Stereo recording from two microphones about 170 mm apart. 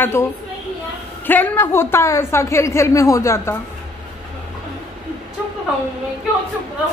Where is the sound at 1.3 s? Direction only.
10° left (ahead or behind).